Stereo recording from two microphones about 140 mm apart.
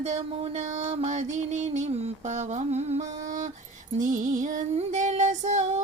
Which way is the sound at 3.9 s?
65° right (ahead or behind).